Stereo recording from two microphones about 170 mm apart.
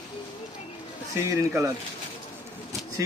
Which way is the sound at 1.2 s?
15° right (ahead or behind).